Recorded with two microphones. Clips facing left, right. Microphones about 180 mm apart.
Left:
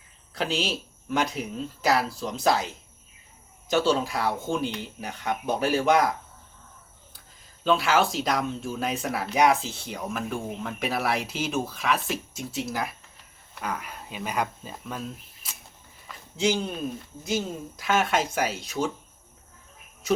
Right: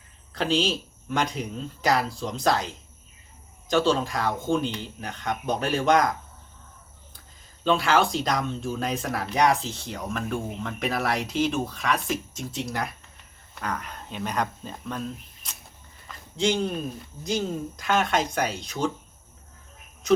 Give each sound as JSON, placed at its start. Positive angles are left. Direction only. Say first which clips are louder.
{"t": 0.3, "sound": "speech", "louder": "right 3 dB", "side_deg": 5}
{"t": 3.7, "sound": "speech", "louder": "right 1 dB", "side_deg": 5}
{"t": 7.6, "sound": "speech", "louder": "right 1 dB", "side_deg": 5}